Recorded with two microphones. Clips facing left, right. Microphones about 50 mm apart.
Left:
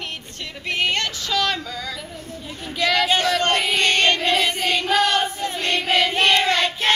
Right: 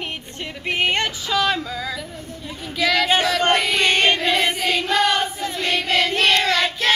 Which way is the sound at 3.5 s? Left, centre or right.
Centre.